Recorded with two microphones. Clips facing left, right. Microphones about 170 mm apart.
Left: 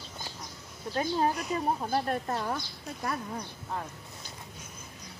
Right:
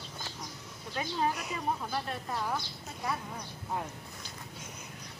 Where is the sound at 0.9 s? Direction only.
40° left (ahead or behind).